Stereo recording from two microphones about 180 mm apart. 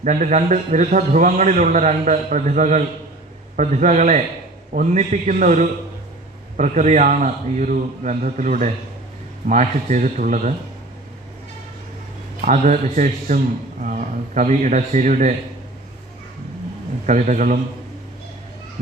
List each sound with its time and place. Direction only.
0.0 s a man's voice: 40° right (ahead or behind)
12.4 s a man's voice: 45° right (ahead or behind)
17.1 s a man's voice: 45° right (ahead or behind)